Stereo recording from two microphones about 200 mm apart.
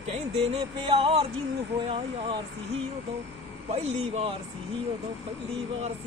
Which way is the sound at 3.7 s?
35° right (ahead or behind).